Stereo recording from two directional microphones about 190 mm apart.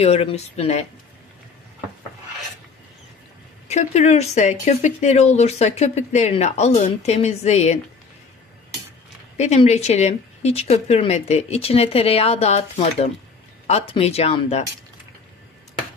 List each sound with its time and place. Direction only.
0.0 s speech: 35° left (ahead or behind)
3.6 s speech: 35° left (ahead or behind)
9.4 s speech: 35° left (ahead or behind)